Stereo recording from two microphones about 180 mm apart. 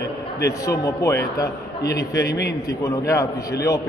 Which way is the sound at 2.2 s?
65° left (ahead or behind).